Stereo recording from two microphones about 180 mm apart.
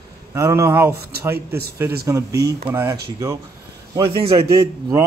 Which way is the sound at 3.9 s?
30° right (ahead or behind).